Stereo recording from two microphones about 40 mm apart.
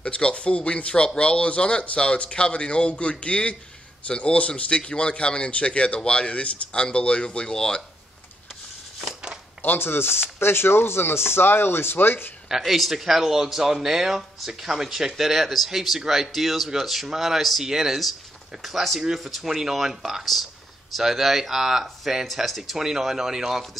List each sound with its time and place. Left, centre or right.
0.0 s speech: left
9.8 s speech: left
12.4 s speech: centre
19.4 s speech: centre